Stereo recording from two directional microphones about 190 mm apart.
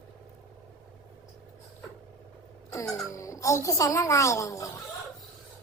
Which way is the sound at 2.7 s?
15° left (ahead or behind).